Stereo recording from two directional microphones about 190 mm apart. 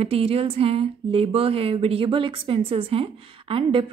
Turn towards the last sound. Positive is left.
turn(degrees=-30)  # may be behind; listen again after turning